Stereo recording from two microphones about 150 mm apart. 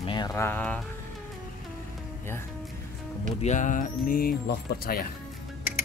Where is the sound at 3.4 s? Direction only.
55° left (ahead or behind); by 4.4 s 75° left (ahead or behind).